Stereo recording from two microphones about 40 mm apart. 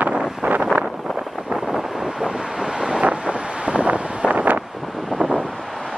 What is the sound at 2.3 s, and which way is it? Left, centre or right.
Vehicle, centre.